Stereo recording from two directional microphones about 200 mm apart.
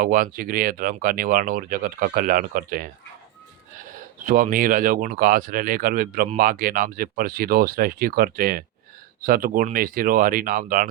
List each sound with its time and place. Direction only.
0.0 s speech: 45° right (ahead or behind)
4.2 s speech: 45° right (ahead or behind)